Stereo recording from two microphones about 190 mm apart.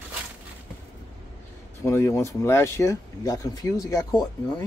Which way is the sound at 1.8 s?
15° left (ahead or behind).